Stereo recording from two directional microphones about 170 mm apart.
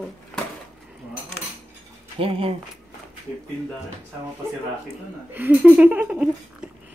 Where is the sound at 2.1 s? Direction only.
35° right (ahead or behind).